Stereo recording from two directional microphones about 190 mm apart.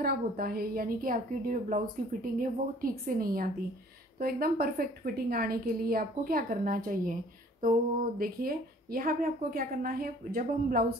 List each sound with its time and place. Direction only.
0.0 s a woman's voice: 50° right (ahead or behind)